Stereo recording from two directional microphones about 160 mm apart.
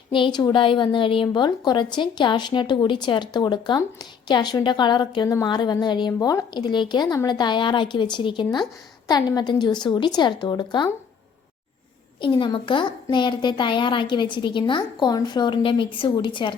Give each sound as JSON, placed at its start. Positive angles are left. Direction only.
{"t": 0.1, "sound": "a woman's voice", "side_deg": 30}
{"t": 12.2, "sound": "a woman's voice", "side_deg": 30}